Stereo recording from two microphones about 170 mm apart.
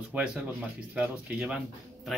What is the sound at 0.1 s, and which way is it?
Speech, 5° right (ahead or behind).